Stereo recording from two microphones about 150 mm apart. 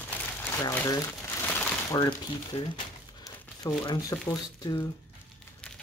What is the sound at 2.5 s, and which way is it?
Speech, 40° left (ahead or behind).